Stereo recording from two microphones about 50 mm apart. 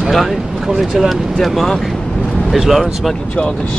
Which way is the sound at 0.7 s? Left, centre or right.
Centre.